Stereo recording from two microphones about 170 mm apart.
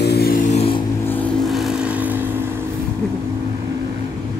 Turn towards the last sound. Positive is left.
turn(degrees=-10)  # may be behind; listen again after turning